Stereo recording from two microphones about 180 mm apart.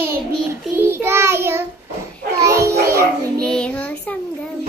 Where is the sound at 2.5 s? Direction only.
15° right (ahead or behind).